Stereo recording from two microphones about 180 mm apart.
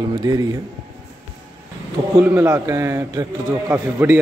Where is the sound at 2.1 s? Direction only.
10° right (ahead or behind).